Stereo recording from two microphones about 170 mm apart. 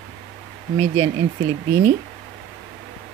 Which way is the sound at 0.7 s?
25° right (ahead or behind).